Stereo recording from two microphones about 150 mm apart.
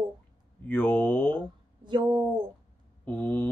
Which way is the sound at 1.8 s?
30° right (ahead or behind).